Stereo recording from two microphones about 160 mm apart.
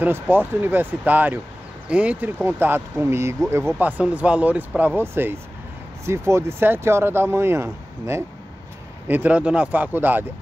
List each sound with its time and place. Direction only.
0.0 s speech: 10° right (ahead or behind)